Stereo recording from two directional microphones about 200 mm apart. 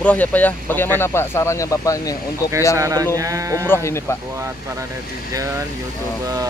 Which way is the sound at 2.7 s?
15° right (ahead or behind).